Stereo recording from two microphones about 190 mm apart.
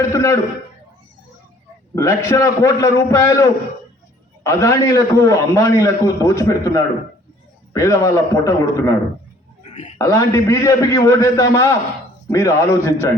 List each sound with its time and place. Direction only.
0.1 s a man's voice: 15° left (ahead or behind)
2.0 s a man's voice: 15° left (ahead or behind)
10.0 s a man's voice: 15° left (ahead or behind)